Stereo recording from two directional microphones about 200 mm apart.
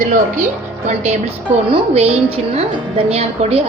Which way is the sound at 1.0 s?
30° right (ahead or behind).